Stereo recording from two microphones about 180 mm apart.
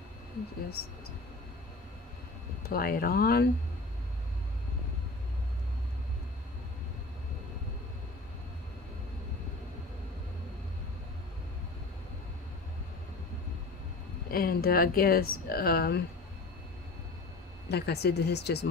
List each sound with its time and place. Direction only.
2.6 s speech: 55° left (ahead or behind)
14.3 s speech: 55° left (ahead or behind)
17.6 s speech: 65° left (ahead or behind)